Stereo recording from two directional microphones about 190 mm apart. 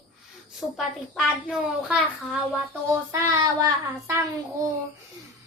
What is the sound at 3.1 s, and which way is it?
Child singing, 15° right (ahead or behind).